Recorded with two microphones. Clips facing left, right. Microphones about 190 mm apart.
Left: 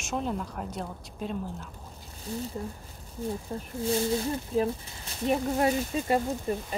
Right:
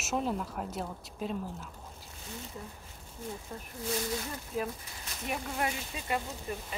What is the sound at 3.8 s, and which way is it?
Speech, 30° left (ahead or behind).